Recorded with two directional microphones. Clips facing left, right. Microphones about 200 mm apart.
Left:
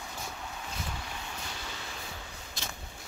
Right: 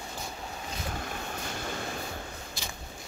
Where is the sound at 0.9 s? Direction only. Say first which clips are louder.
Right 5 dB; 50° right (ahead or behind).